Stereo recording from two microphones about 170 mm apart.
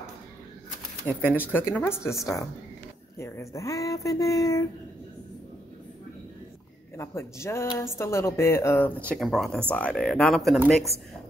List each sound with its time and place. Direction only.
1.0 s speech: 10° left (ahead or behind)
3.2 s speech: 15° left (ahead or behind)
7.0 s speech: 15° left (ahead or behind); by 10.6 s centre (ahead or behind)